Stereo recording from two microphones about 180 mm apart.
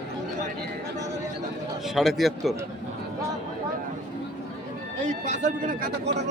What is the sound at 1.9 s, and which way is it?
Speech, centre (ahead or behind).